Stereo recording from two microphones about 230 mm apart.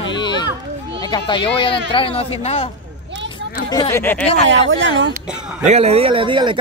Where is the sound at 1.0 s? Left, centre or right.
Centre.